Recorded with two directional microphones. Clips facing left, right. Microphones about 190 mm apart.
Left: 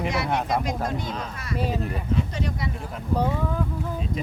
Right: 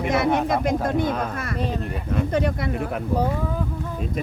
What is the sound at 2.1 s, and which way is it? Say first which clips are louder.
Speech: right 7 dB; 55° right (ahead or behind).